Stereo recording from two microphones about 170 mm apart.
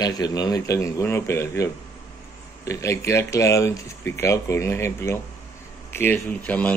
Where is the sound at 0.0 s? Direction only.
25° left (ahead or behind).